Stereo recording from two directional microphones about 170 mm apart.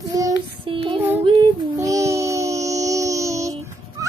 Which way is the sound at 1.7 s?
20° right (ahead or behind).